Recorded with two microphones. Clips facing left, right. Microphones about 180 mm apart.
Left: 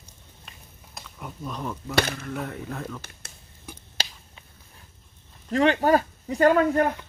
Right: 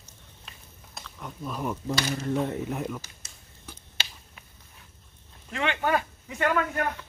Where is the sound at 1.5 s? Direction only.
10° right (ahead or behind).